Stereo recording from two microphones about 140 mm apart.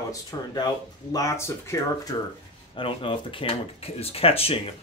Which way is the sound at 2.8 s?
40° left (ahead or behind).